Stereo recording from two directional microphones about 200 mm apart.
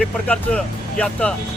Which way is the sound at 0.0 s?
5° left (ahead or behind).